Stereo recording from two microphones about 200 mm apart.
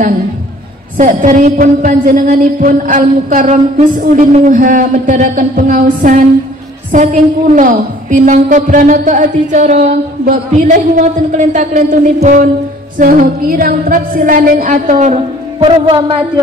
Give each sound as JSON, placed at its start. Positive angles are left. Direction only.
{"t": 0.9, "sound": "a woman's voice", "side_deg": -40}
{"t": 15.6, "sound": "speech", "side_deg": -25}